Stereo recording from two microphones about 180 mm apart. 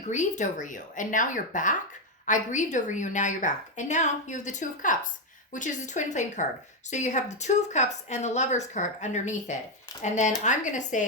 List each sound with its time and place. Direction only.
0.1 s a woman's voice: 40° left (ahead or behind)